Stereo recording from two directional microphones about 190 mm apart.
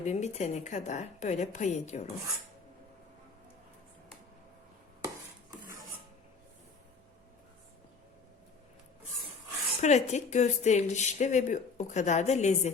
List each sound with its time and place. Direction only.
0.0 s speech: 35° left (ahead or behind)
5.0 s dishes: 15° right (ahead or behind)
9.8 s speech: 35° left (ahead or behind)